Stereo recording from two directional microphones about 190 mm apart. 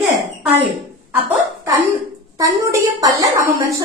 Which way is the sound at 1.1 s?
10° right (ahead or behind).